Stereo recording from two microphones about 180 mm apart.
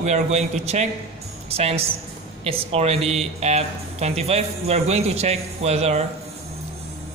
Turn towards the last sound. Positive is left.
turn(degrees=-35)  # may be behind; listen again after turning